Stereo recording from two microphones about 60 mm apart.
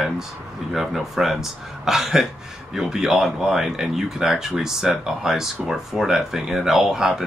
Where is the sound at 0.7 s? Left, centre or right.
Centre.